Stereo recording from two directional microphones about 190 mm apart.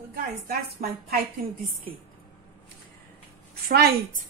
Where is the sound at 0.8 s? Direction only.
45° right (ahead or behind).